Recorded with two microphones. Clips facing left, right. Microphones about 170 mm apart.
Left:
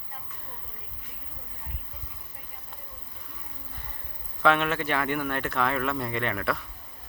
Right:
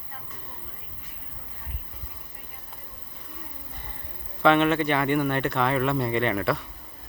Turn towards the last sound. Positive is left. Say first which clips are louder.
# right 5 dB
turn(degrees=0)  # may be behind; listen again after turning